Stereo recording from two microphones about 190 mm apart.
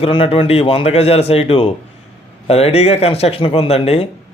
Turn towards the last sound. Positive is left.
turn(degrees=30)  # may be behind; listen again after turning